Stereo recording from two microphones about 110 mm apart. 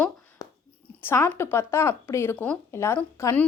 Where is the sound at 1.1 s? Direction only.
20° left (ahead or behind).